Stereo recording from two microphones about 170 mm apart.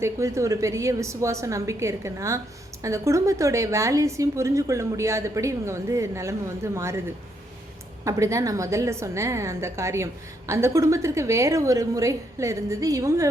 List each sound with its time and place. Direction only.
0.0 s a woman's voice: 15° right (ahead or behind)
8.0 s a woman's voice: 20° right (ahead or behind)